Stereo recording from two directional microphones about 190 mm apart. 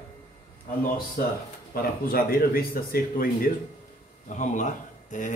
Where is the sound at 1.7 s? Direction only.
50° left (ahead or behind).